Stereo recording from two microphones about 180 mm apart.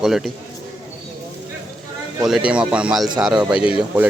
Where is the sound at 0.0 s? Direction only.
Centre (ahead or behind).